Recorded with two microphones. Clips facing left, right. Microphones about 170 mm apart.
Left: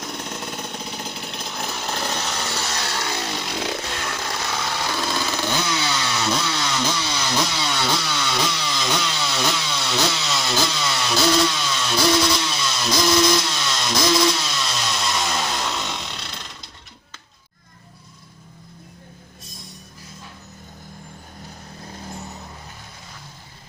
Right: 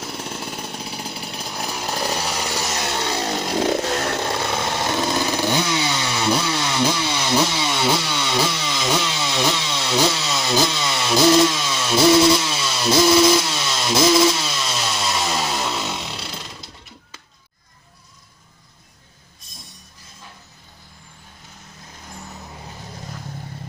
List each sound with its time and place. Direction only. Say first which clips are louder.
0.0 s chainsaw: right 1 dB; 5° right (ahead or behind)
3.1 s chainsaw: right 5 dB; 40° right (ahead or behind); by 16.7 s 5° right (ahead or behind)